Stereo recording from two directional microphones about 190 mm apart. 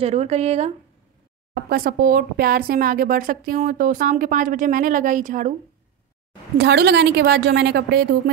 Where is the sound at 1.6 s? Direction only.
50° right (ahead or behind).